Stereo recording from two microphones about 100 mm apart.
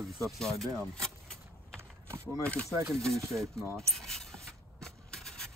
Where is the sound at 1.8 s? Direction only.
25° right (ahead or behind).